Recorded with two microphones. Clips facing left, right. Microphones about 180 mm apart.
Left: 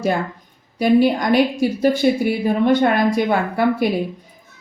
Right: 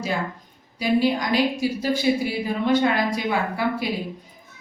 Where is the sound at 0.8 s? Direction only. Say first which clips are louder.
Left 6 dB; 55° left (ahead or behind).